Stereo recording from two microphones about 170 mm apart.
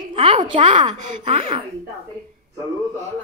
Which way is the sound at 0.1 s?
30° right (ahead or behind).